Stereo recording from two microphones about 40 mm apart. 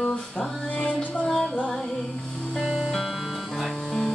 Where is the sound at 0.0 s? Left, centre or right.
Centre.